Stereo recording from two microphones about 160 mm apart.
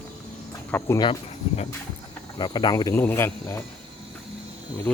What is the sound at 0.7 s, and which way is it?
Speech, 15° left (ahead or behind).